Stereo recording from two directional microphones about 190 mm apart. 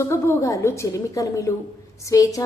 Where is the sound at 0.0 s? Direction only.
15° left (ahead or behind).